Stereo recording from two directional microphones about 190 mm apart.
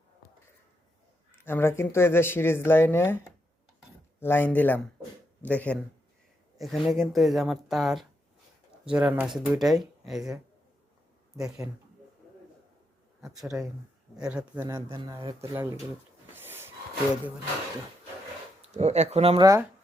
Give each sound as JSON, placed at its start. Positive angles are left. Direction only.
{"t": 1.4, "sound": "speech", "side_deg": 10}
{"t": 11.3, "sound": "speech", "side_deg": -5}
{"t": 13.2, "sound": "speech", "side_deg": 0}
{"t": 14.8, "sound": "speech", "side_deg": -25}
{"t": 16.3, "sound": "a sound", "side_deg": -10}
{"t": 18.6, "sound": "speech", "side_deg": -35}
{"t": 19.4, "sound": "speech", "side_deg": -20}